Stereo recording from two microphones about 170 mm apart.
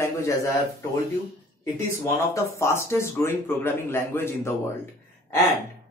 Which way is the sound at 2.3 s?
15° left (ahead or behind).